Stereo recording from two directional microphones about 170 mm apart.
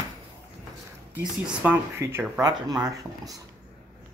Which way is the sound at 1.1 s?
10° right (ahead or behind).